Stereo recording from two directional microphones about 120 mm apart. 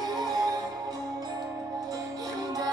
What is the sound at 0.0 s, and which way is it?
Music, 30° right (ahead or behind).